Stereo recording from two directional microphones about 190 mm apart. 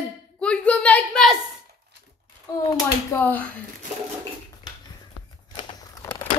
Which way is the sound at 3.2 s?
10° left (ahead or behind).